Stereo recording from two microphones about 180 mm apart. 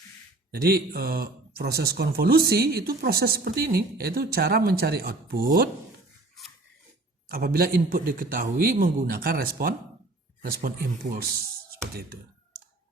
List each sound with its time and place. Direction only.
0.5 s speech: 60° right (ahead or behind)
7.3 s a man's voice: 55° right (ahead or behind)